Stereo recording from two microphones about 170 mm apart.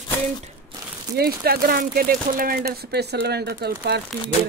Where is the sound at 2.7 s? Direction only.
70° right (ahead or behind).